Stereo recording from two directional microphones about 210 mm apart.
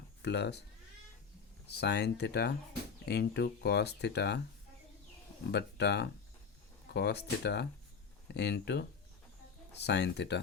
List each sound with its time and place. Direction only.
0.2 s speech: 55° left (ahead or behind)
1.6 s speech: 50° left (ahead or behind)
5.5 s speech: 55° left (ahead or behind)